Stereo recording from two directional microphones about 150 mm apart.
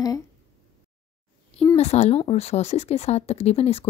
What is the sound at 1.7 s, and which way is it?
Speech, 45° left (ahead or behind).